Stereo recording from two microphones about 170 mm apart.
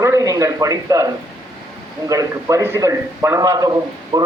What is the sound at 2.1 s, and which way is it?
A man's voice, 20° right (ahead or behind).